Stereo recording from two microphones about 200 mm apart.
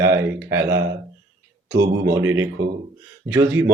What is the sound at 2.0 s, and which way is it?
A man's voice, 15° right (ahead or behind).